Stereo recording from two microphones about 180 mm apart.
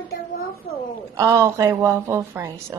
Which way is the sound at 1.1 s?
15° right (ahead or behind).